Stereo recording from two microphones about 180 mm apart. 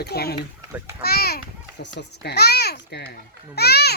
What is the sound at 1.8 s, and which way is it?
Speech, 70° left (ahead or behind).